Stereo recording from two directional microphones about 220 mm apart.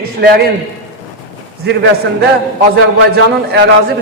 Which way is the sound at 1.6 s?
50° right (ahead or behind).